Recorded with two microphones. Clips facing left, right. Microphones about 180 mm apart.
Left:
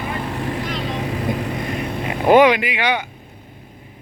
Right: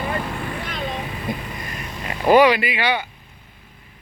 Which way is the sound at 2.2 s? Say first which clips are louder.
Left 2 dB; 20° left (ahead or behind).